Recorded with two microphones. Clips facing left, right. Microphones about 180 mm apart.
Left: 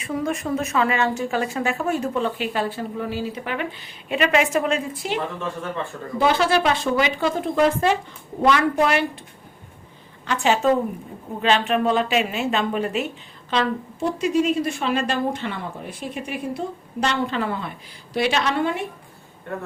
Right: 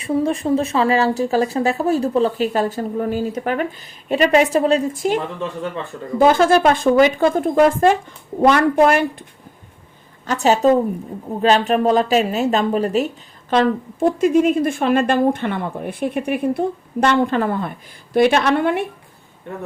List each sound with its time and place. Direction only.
0.0 s a woman's voice: 30° right (ahead or behind); by 9.2 s 50° right (ahead or behind)
10.2 s speech: 40° right (ahead or behind)
13.5 s a woman's voice: 50° right (ahead or behind)